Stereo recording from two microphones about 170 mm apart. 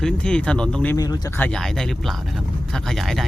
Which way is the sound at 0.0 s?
5° left (ahead or behind).